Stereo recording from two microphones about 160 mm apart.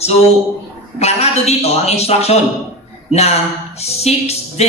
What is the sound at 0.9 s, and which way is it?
A man's voice, 40° left (ahead or behind).